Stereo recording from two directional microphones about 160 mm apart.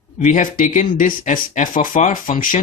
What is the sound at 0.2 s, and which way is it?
Speech, 55° left (ahead or behind).